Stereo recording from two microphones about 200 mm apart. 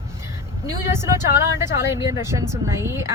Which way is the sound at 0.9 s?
15° right (ahead or behind).